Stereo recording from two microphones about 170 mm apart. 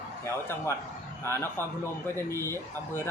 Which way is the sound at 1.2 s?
15° left (ahead or behind).